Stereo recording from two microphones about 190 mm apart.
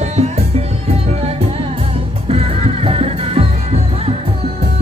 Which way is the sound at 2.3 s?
30° right (ahead or behind).